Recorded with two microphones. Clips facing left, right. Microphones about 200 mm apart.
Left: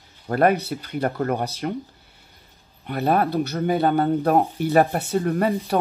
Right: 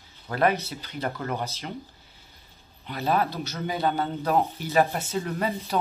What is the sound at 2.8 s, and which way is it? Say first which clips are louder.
Speech: left 5 dB; 55° left (ahead or behind).